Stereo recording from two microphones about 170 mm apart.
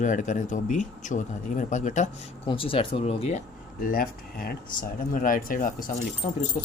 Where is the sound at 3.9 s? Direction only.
60° left (ahead or behind).